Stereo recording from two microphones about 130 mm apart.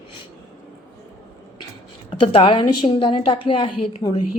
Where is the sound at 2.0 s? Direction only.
45° left (ahead or behind).